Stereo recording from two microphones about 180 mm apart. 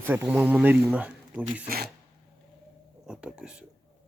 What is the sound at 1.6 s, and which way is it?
Speech, 55° right (ahead or behind).